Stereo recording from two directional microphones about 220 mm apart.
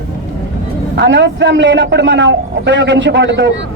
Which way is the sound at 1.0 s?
55° right (ahead or behind).